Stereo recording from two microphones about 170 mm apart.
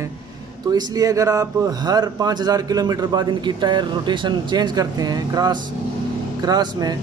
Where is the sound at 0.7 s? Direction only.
25° right (ahead or behind).